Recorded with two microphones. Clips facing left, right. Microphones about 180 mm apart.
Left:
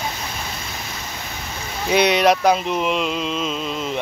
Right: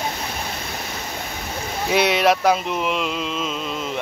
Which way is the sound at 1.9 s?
5° right (ahead or behind).